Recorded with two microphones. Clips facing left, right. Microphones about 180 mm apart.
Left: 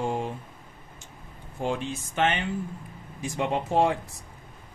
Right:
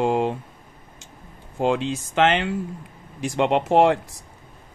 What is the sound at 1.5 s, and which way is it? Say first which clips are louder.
Speech: right 7 dB; 90° right.